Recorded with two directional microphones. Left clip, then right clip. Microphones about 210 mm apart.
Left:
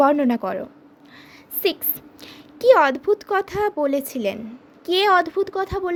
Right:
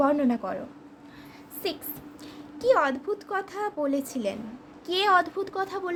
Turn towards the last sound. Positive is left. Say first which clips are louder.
# left 6 dB
turn(degrees=30)  # may be behind; listen again after turning